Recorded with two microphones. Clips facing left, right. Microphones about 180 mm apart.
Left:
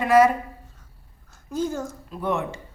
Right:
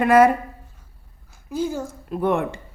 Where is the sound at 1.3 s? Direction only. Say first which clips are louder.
Right 1 dB; 10° right (ahead or behind).